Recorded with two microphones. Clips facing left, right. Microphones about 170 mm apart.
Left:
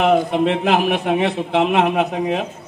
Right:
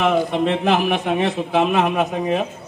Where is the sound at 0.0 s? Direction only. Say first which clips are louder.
Left 2 dB; 60° left (ahead or behind).